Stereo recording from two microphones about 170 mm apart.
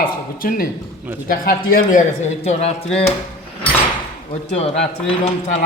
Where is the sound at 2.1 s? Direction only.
40° left (ahead or behind).